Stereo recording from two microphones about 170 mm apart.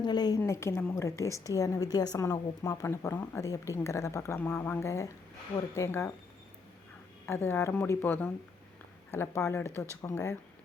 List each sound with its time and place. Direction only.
0.0 s a woman's voice: 25° left (ahead or behind)
7.3 s speech: 15° left (ahead or behind)